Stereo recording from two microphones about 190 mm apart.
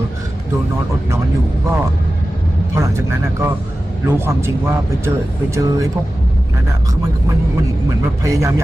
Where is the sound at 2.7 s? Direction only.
15° right (ahead or behind).